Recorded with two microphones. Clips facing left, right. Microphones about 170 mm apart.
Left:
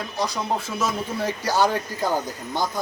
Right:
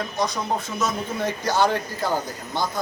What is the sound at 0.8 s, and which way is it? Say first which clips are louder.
Speech: even; 10° left (ahead or behind).